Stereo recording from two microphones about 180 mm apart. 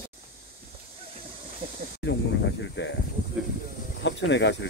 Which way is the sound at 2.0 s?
80° left.